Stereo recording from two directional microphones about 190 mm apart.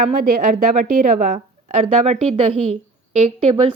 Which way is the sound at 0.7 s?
40° right (ahead or behind).